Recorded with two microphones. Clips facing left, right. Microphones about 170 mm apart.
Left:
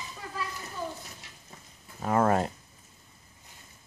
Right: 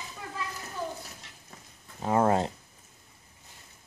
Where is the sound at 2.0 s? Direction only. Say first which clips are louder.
Even; 20° right (ahead or behind).